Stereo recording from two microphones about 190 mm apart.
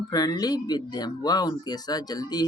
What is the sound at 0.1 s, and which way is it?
Speech, 20° left (ahead or behind).